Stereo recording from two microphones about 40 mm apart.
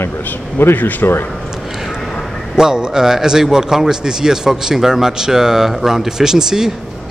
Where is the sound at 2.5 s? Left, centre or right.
Centre.